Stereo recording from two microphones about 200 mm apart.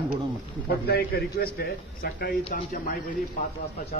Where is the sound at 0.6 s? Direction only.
50° left (ahead or behind).